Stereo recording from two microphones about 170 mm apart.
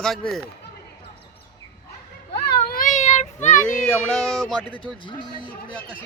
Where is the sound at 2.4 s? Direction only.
65° left (ahead or behind); by 3.8 s 50° left (ahead or behind).